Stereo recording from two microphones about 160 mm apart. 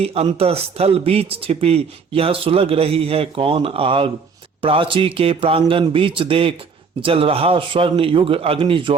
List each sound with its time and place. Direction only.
0.0 s a man's voice: 40° right (ahead or behind)